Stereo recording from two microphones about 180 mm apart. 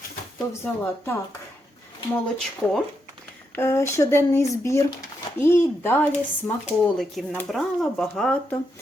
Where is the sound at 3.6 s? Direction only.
15° left (ahead or behind).